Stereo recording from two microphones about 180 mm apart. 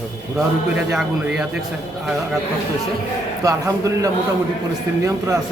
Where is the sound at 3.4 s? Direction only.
20° right (ahead or behind).